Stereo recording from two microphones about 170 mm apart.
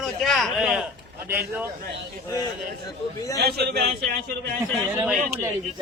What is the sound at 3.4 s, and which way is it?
Speech, 70° right (ahead or behind).